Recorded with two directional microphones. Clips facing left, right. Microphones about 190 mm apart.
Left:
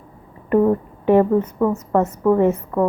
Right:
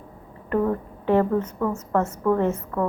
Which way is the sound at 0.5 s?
20° left (ahead or behind).